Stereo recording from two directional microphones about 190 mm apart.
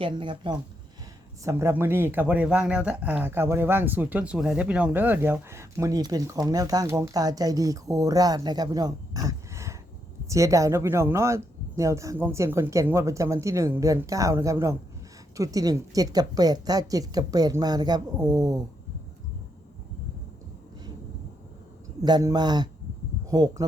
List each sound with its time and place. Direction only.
0.0 s a woman's voice: 25° right (ahead or behind)
1.5 s a woman's voice: 15° right (ahead or behind)
22.0 s a woman's voice: 20° right (ahead or behind)